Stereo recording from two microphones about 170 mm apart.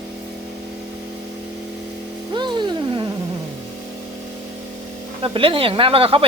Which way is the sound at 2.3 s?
25° right (ahead or behind).